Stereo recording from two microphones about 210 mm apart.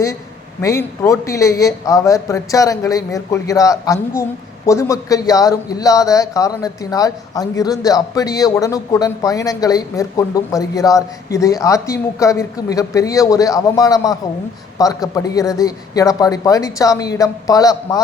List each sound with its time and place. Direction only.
0.6 s a man's voice: 15° left (ahead or behind)